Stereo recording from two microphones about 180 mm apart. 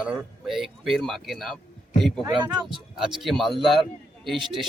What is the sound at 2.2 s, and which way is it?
Speech, 25° right (ahead or behind).